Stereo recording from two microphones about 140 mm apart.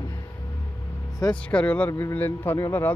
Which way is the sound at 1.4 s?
10° left (ahead or behind).